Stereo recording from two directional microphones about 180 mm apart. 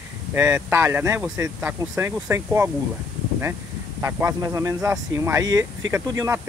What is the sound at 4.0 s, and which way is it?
Speech, 15° right (ahead or behind).